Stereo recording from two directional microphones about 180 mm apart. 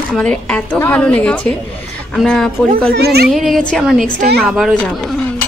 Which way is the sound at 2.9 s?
65° right (ahead or behind).